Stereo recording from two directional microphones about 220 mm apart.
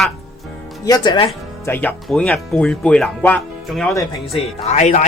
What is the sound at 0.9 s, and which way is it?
Speech, 20° left (ahead or behind).